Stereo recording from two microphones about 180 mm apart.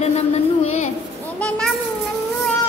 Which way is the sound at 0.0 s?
35° left (ahead or behind).